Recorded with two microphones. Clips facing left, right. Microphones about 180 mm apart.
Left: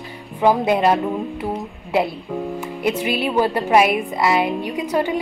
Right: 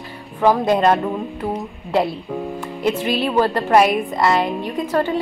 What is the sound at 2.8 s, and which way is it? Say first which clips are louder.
A woman's voice: right 1 dB; 10° left (ahead or behind).